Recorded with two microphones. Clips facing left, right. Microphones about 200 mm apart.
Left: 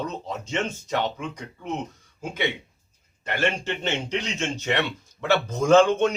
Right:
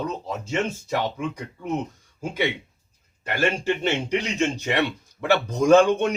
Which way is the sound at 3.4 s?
10° right (ahead or behind).